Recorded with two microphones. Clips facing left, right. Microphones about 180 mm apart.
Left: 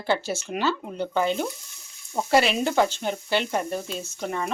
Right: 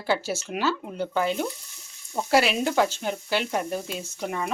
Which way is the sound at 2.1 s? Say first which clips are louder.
Left 1 dB; 5° right (ahead or behind).